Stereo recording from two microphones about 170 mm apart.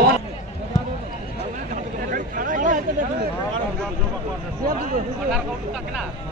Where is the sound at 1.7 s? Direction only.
50° right (ahead or behind).